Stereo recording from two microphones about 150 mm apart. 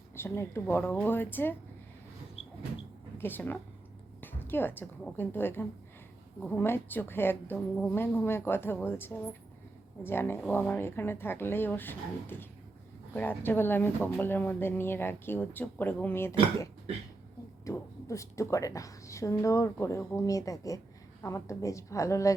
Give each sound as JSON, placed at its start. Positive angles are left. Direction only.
{"t": 0.2, "sound": "speech", "side_deg": 15}
{"t": 3.2, "sound": "a woman's voice", "side_deg": 15}
{"t": 17.7, "sound": "a woman's voice", "side_deg": 20}